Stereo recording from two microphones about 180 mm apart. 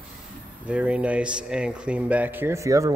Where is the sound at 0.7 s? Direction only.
5° right (ahead or behind).